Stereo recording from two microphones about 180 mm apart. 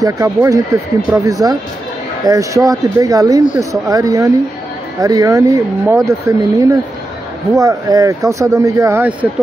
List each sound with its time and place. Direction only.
0.0 s speech: 20° right (ahead or behind)